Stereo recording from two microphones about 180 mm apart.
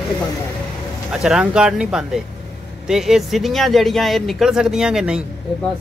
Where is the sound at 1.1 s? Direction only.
5° right (ahead or behind).